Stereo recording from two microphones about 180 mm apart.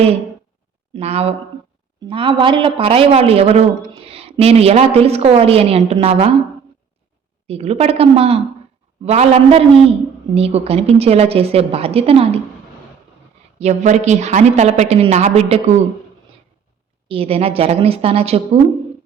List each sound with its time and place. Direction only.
0.9 s a man's voice: 35° right (ahead or behind)
7.4 s a man's voice: 35° right (ahead or behind)
13.6 s a man's voice: 40° right (ahead or behind)
17.1 s a man's voice: 30° right (ahead or behind)